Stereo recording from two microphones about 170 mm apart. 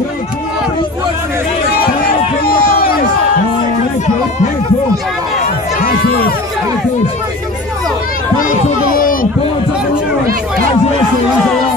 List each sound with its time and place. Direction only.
2.0 s run: 60° left (ahead or behind)
8.4 s run: 55° left (ahead or behind)